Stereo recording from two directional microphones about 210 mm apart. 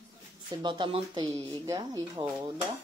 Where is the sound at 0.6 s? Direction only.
20° right (ahead or behind).